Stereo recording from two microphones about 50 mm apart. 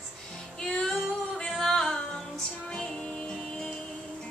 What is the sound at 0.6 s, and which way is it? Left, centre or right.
Music, centre.